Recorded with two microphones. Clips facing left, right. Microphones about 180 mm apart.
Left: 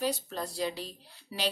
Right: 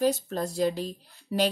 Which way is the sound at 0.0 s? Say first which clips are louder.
Right 7 dB; 45° right (ahead or behind).